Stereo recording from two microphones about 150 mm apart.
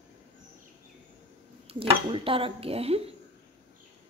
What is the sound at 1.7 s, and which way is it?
Speech, 40° right (ahead or behind).